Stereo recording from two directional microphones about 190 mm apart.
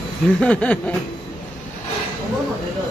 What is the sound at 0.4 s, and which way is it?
Snicker, 5° left (ahead or behind).